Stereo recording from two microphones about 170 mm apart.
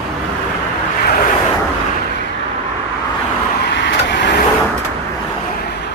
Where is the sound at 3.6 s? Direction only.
90° left.